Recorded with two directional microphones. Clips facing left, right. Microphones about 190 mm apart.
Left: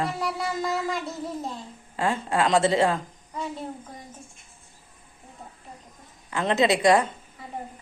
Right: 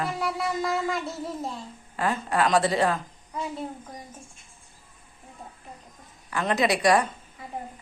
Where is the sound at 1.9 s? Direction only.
25° left (ahead or behind).